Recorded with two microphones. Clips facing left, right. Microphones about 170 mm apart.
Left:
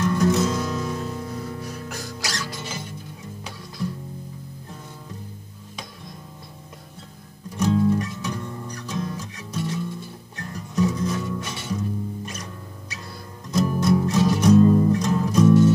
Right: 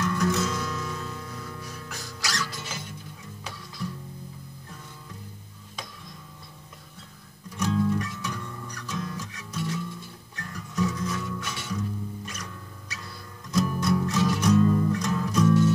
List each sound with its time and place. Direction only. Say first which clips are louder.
0.0 s music: left 5 dB; 30° left (ahead or behind)
2.2 s music: right 1 dB; 30° left (ahead or behind)
7.5 s music: left 5 dB; 30° left (ahead or behind)
13.5 s music: left 4 dB; 30° left (ahead or behind)